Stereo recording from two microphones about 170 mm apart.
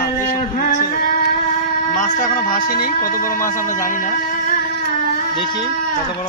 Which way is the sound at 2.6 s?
55° left (ahead or behind).